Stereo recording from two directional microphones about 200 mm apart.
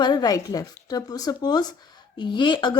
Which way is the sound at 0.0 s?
20° left (ahead or behind).